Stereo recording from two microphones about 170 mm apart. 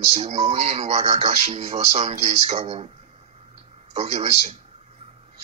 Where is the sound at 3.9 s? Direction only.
40° right (ahead or behind).